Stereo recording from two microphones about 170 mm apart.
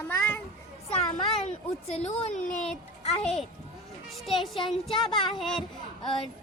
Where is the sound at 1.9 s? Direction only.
35° left (ahead or behind).